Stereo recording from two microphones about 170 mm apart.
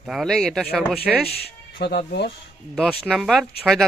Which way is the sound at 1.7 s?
70° left (ahead or behind).